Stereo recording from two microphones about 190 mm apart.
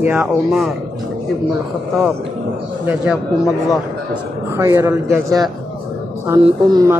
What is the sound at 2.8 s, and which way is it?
Speech, 5° right (ahead or behind).